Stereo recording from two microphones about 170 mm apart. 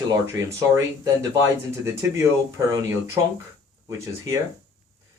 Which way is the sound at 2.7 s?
20° right (ahead or behind).